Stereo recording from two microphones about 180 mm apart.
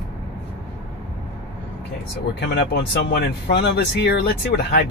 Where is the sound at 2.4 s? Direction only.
70° left (ahead or behind).